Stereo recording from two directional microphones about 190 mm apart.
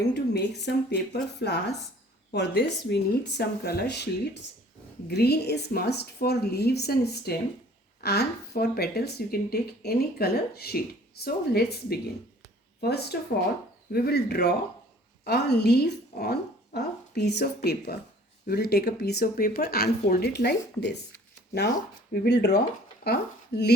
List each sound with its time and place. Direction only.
0.1 s speech: 60° left (ahead or behind)
22.1 s speech: 55° left (ahead or behind)